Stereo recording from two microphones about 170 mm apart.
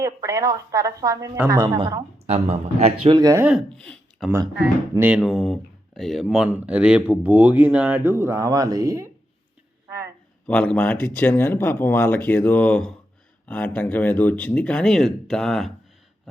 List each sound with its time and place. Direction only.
0.0 s speech: 20° right (ahead or behind)
2.2 s a man's voice: 35° right (ahead or behind)
3.2 s speech: 20° right (ahead or behind)
3.4 s speech: centre (ahead or behind)
4.6 s speech: 10° right (ahead or behind)
10.4 s speech: 5° left (ahead or behind)